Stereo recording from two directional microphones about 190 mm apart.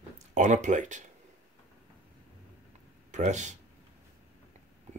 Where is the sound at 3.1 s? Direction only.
40° right (ahead or behind).